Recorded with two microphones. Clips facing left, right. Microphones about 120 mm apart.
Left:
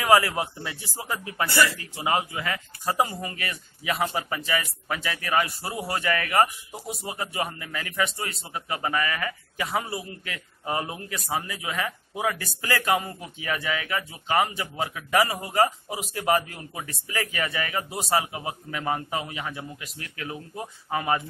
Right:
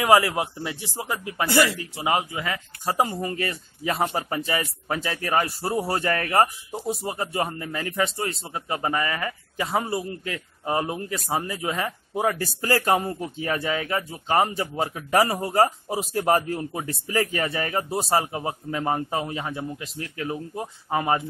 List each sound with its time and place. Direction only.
0.0 s speech: 20° right (ahead or behind)
3.2 s speech: 35° right (ahead or behind)